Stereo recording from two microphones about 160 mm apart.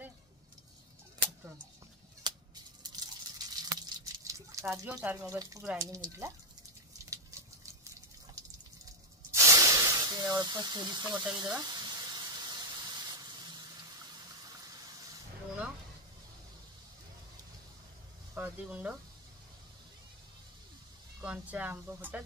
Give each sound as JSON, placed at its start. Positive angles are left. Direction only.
{"t": 2.2, "sound": "drip", "side_deg": -25}
{"t": 5.8, "sound": "speech", "side_deg": -20}
{"t": 9.3, "sound": "snake", "side_deg": -20}
{"t": 18.3, "sound": "speech", "side_deg": -10}
{"t": 21.2, "sound": "speech", "side_deg": -10}